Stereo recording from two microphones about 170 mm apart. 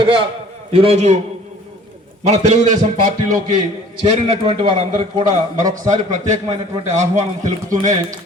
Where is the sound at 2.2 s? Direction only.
45° right (ahead or behind).